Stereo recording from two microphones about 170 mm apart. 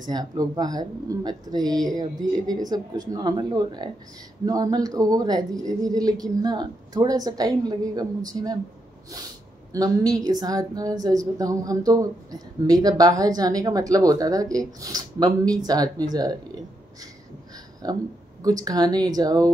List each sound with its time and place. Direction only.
0.0 s a woman's voice: 25° right (ahead or behind)
9.7 s a woman's voice: 20° right (ahead or behind)
18.4 s a woman's voice: 20° right (ahead or behind)